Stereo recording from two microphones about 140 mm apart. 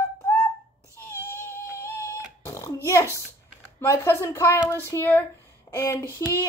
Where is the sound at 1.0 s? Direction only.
15° left (ahead or behind).